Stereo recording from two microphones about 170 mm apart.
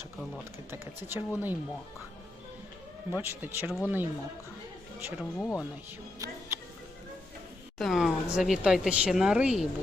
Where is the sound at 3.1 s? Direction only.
10° right (ahead or behind).